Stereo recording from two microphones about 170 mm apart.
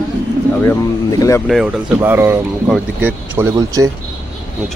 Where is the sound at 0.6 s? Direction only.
20° left (ahead or behind).